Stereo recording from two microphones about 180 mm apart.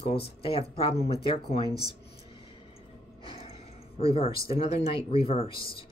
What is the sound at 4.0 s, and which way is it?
Speech, 30° left (ahead or behind).